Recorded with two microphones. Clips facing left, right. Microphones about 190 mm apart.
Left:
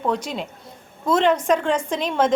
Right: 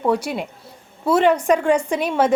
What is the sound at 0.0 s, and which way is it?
A woman's voice, 10° right (ahead or behind).